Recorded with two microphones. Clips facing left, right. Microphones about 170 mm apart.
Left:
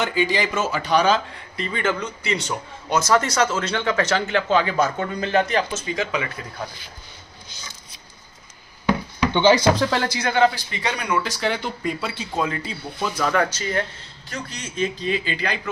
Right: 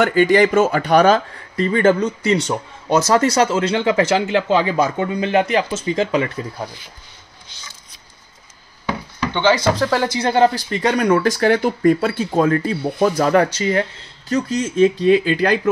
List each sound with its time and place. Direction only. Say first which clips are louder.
0.0 s speech: right 9 dB; 60° right (ahead or behind)
3.0 s speech: right 4 dB; 30° right (ahead or behind)
3.7 s speech: right 5 dB; 15° right (ahead or behind)
5.9 s speech: right 8 dB; 35° right (ahead or behind)
9.2 s speech: even; 10° left (ahead or behind)
9.7 s speech: right 2 dB; 5° right (ahead or behind)
10.0 s speech: right 5 dB; 25° right (ahead or behind)
10.3 s speech: right 3 dB; 40° right (ahead or behind)
13.3 s speech: right 6 dB; 35° right (ahead or behind)
14.3 s speech: right 13 dB; 45° right (ahead or behind)